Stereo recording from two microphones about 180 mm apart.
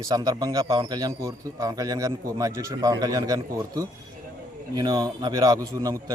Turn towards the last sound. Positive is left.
turn(degrees=-15)  # may be behind; listen again after turning